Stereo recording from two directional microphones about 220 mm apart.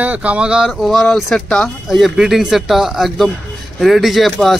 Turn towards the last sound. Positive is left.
turn(degrees=0)  # may be behind; listen again after turning